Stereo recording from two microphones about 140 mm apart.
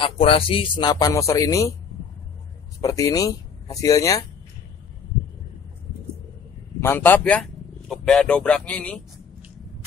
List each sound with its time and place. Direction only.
0.0 s speech: 40° left (ahead or behind); by 1.8 s 20° left (ahead or behind)
2.8 s speech: 25° left (ahead or behind)
6.8 s speech: 15° left (ahead or behind)